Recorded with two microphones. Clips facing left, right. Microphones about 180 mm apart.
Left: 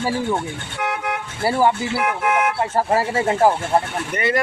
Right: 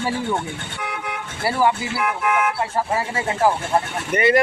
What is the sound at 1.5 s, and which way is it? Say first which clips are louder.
Speech: left 2 dB; 20° left (ahead or behind).